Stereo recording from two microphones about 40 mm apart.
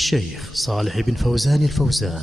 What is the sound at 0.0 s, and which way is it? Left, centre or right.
A man's voice, centre.